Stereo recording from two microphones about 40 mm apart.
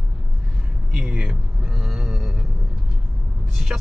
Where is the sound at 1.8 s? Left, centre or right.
Centre.